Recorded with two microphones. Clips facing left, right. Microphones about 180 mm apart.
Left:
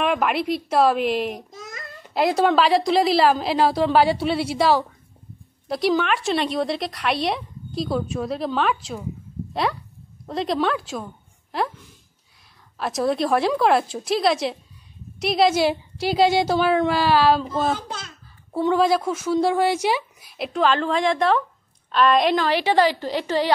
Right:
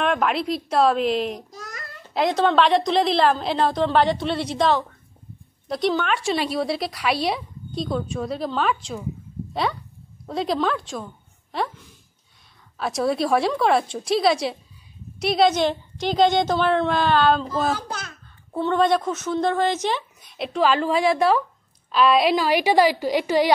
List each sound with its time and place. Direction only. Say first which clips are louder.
0.0 s a woman's voice: even; 5° left (ahead or behind)
12.7 s a woman's voice: even; centre (ahead or behind)
17.7 s a child's voice: right 1 dB; 25° left (ahead or behind)
18.5 s a woman's voice: left 1 dB; 5° left (ahead or behind); by 23.5 s 15° right (ahead or behind)